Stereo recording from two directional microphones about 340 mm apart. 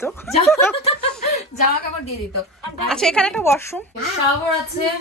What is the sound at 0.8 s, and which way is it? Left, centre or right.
Snicker, centre.